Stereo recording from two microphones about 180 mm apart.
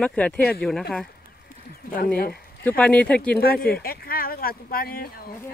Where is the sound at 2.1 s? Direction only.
55° left (ahead or behind).